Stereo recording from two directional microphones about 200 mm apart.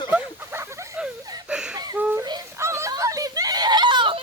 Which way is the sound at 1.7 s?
15° right (ahead or behind).